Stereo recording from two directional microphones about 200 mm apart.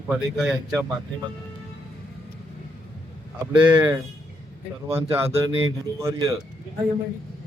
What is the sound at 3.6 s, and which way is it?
Speech, 10° right (ahead or behind).